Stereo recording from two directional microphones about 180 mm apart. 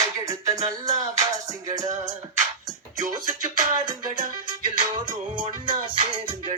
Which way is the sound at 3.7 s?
25° right (ahead or behind).